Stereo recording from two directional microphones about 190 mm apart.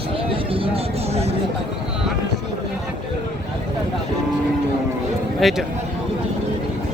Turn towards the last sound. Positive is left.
turn(degrees=0)  # may be behind; listen again after turning